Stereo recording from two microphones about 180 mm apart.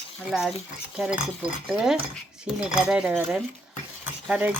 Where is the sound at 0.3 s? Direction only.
Centre (ahead or behind).